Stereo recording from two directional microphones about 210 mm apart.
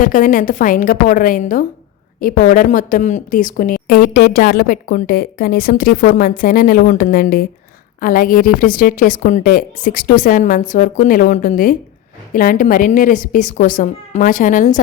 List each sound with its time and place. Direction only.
0.0 s a woman's voice: 40° left (ahead or behind)